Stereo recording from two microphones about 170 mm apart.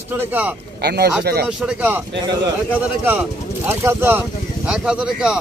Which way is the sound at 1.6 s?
10° right (ahead or behind).